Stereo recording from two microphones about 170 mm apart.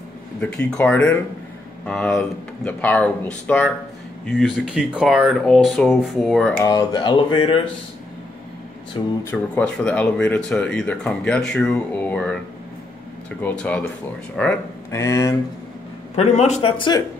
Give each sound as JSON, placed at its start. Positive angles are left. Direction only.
{"t": 0.4, "sound": "speech", "side_deg": 5}
{"t": 6.6, "sound": "speech", "side_deg": 20}
{"t": 9.0, "sound": "speech", "side_deg": 30}
{"t": 9.3, "sound": "speech", "side_deg": 10}
{"t": 13.4, "sound": "speech", "side_deg": 10}
{"t": 16.2, "sound": "a man's voice", "side_deg": 40}
{"t": 16.7, "sound": "speech", "side_deg": 30}